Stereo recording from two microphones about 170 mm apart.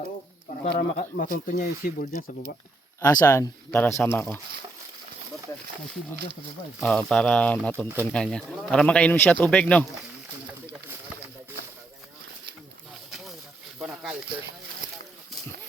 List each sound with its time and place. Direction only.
0.8 s speech: 60° left (ahead or behind)
3.0 s speech: 20° left (ahead or behind)
6.7 s speech: 5° left (ahead or behind)
13.1 s a sound: centre (ahead or behind)